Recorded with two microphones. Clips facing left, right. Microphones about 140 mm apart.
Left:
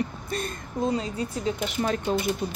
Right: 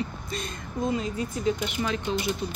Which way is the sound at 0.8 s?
30° left (ahead or behind).